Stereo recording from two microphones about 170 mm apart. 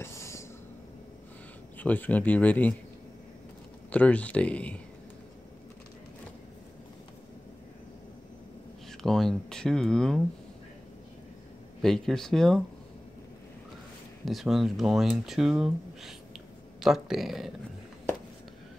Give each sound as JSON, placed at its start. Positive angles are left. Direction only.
{"t": 0.0, "sound": "a sound", "side_deg": 15}
{"t": 1.8, "sound": "speech", "side_deg": 10}
{"t": 3.9, "sound": "speech", "side_deg": 10}
{"t": 9.0, "sound": "speech", "side_deg": 0}
{"t": 11.8, "sound": "speech", "side_deg": 5}
{"t": 14.2, "sound": "speech", "side_deg": 0}